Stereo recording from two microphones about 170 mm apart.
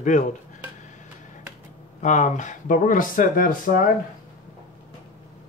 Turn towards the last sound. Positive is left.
turn(degrees=55)  # may be behind; listen again after turning